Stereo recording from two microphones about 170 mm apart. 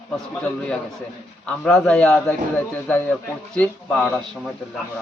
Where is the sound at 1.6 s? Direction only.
5° left (ahead or behind).